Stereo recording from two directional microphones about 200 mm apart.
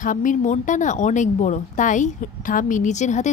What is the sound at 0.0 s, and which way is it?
Speech, 40° left (ahead or behind).